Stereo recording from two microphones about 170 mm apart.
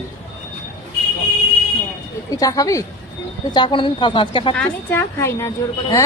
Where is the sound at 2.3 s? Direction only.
20° left (ahead or behind).